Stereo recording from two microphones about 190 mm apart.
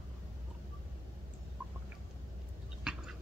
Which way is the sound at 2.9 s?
5° right (ahead or behind).